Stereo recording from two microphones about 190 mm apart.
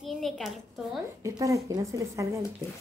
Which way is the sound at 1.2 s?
15° right (ahead or behind).